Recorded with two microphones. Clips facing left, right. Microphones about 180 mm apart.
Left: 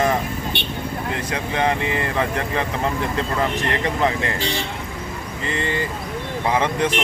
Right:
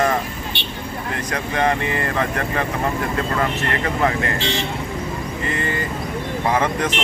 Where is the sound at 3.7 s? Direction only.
20° left (ahead or behind).